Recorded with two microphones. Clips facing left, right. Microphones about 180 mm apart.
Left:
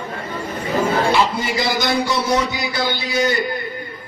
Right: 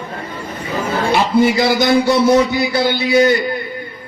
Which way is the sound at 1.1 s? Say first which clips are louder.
Right 5 dB; 55° right (ahead or behind).